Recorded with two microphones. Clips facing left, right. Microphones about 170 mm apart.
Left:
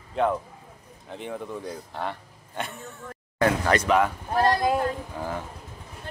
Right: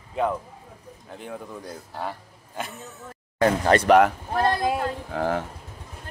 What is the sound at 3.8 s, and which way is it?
Speech, 70° right (ahead or behind).